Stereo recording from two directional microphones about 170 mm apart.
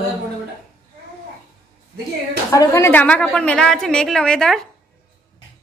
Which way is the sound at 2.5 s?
20° left (ahead or behind).